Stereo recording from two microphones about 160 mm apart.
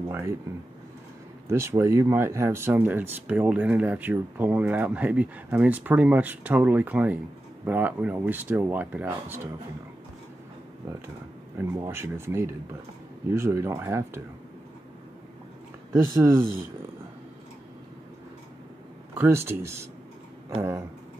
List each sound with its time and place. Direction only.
0.1 s speech: 15° right (ahead or behind)
1.5 s speech: 15° right (ahead or behind)
11.5 s speech: 20° right (ahead or behind)
15.9 s speech: 15° right (ahead or behind)
19.1 s speech: 15° right (ahead or behind)